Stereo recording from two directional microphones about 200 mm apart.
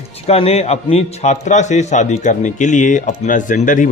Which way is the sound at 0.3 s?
30° left (ahead or behind).